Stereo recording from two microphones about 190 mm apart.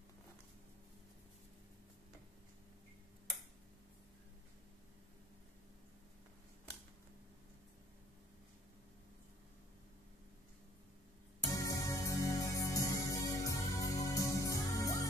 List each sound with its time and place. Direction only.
11.5 s music: 20° left (ahead or behind)